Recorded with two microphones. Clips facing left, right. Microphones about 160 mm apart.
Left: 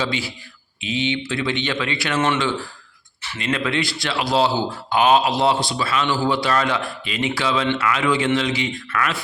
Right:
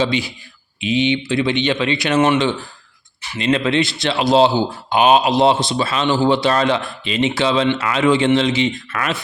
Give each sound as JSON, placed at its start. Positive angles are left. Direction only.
{"t": 0.0, "sound": "speech", "side_deg": -20}